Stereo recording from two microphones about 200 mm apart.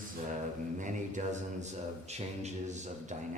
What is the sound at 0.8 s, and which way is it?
Speech, 40° right (ahead or behind).